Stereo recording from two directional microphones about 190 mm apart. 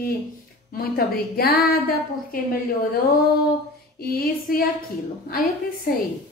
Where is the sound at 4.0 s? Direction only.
50° left (ahead or behind).